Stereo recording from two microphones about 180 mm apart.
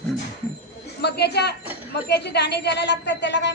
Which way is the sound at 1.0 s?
65° left (ahead or behind).